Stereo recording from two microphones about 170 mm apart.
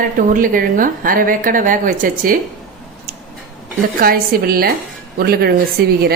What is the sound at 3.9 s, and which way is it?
A woman's voice, 60° right (ahead or behind).